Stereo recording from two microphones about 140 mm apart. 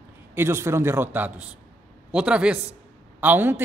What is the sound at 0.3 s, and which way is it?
Speech, 15° right (ahead or behind).